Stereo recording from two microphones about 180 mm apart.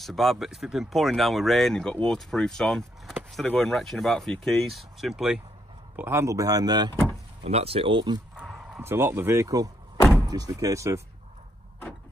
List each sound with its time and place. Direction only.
0.0 s speech: centre (ahead or behind)
5.9 s speech: 15° right (ahead or behind)
7.4 s speech: 35° right (ahead or behind)
8.4 s speech: 5° right (ahead or behind)